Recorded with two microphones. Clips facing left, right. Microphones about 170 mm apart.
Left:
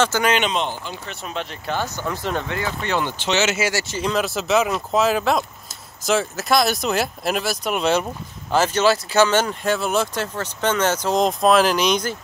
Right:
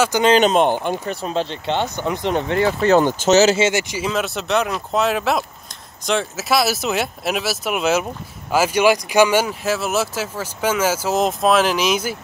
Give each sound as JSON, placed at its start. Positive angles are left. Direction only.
{"t": 0.2, "sound": "speech", "side_deg": -30}
{"t": 0.5, "sound": "speech", "side_deg": -55}
{"t": 1.0, "sound": "speech", "side_deg": -35}
{"t": 2.8, "sound": "speech", "side_deg": -40}
{"t": 3.5, "sound": "speech", "side_deg": -20}
{"t": 4.0, "sound": "speech", "side_deg": 0}